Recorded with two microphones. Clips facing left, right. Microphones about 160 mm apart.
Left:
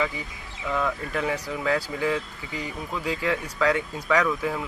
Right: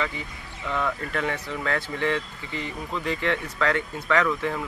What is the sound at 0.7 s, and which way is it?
Speech, 5° left (ahead or behind).